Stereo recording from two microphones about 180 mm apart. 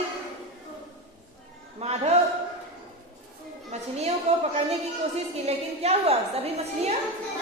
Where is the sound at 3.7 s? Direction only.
35° right (ahead or behind).